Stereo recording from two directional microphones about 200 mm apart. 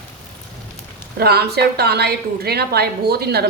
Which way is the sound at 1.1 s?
50° right (ahead or behind).